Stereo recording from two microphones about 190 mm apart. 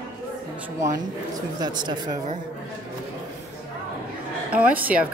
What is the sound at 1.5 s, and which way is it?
Speech, 20° right (ahead or behind).